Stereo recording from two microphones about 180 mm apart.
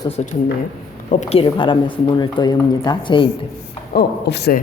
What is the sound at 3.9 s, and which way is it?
Speech, 65° left (ahead or behind).